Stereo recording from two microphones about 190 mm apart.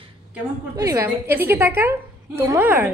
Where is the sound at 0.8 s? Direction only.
15° right (ahead or behind).